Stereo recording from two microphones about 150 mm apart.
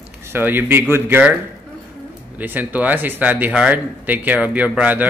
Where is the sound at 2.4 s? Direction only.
10° right (ahead or behind).